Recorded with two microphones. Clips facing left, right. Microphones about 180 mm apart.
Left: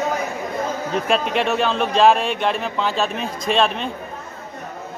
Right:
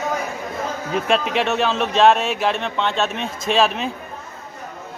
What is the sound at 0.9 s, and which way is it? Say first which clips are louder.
Speech: right 1 dB; centre (ahead or behind).